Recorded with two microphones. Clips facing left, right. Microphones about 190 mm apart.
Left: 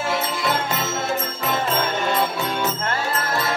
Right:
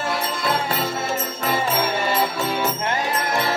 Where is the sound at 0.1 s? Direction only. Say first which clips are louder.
Left 1 dB; centre (ahead or behind).